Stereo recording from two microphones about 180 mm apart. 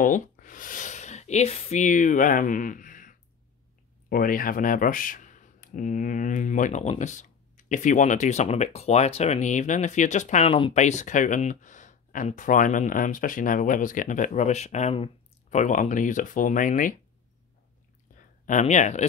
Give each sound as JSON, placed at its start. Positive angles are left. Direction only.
{"t": 0.0, "sound": "speech", "side_deg": 45}
{"t": 18.4, "sound": "speech", "side_deg": 45}